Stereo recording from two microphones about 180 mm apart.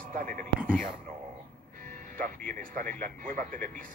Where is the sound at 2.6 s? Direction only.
50° right (ahead or behind).